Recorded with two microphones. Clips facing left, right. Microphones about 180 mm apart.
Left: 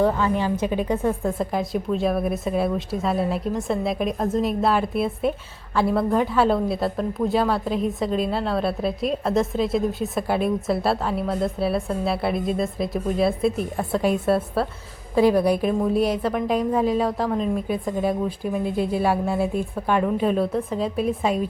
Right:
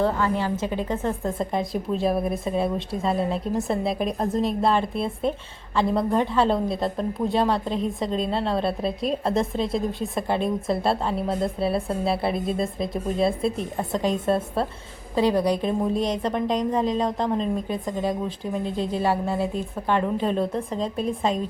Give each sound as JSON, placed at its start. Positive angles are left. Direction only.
{"t": 0.0, "sound": "a woman's voice", "side_deg": 15}